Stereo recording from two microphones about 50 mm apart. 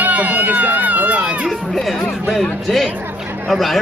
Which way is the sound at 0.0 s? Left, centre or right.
Right.